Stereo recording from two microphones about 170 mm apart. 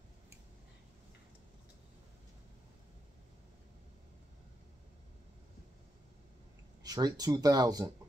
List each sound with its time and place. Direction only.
6.8 s speech: 25° right (ahead or behind)